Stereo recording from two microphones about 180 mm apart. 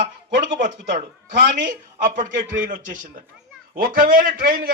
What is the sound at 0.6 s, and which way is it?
A man's voice, 45° right (ahead or behind).